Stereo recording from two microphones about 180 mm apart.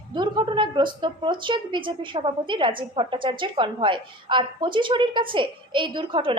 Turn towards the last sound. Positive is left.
turn(degrees=-25)  # may be behind; listen again after turning